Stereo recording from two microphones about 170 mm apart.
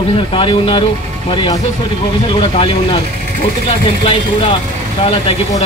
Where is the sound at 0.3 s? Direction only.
30° left (ahead or behind).